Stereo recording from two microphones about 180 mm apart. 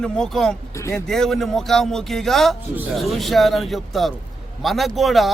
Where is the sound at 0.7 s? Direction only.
15° left (ahead or behind).